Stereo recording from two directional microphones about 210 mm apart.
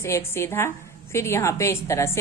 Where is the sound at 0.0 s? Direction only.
10° left (ahead or behind).